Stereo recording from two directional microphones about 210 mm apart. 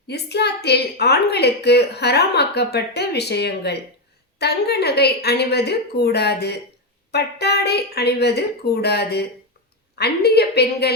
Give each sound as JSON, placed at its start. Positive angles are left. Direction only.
{"t": 0.1, "sound": "a woman's voice", "side_deg": 50}